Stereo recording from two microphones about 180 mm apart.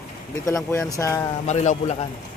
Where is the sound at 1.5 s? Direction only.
40° left (ahead or behind).